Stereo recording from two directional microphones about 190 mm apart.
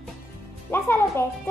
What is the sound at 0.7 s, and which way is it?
Speech, 15° left (ahead or behind).